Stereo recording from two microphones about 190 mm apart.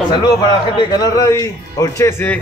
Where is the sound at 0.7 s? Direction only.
20° left (ahead or behind).